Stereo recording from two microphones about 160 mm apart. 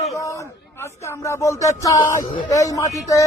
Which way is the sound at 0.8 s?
15° left (ahead or behind).